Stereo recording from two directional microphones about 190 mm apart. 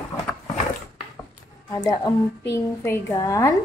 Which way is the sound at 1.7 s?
20° left (ahead or behind).